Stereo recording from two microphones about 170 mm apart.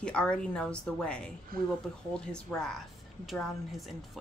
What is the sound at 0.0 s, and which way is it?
A woman's voice, 5° left (ahead or behind).